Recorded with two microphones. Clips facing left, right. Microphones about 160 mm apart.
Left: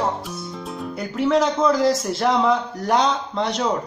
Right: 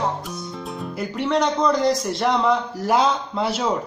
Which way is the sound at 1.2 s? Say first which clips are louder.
Left 2 dB; centre (ahead or behind).